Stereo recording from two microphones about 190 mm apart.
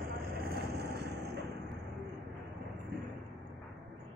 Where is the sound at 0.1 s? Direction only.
55° right (ahead or behind).